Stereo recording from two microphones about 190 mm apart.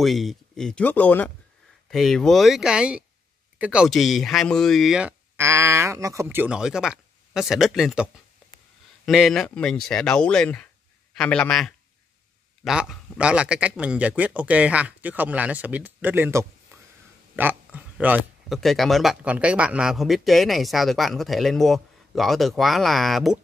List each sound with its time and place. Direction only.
0.0 s speech: centre (ahead or behind)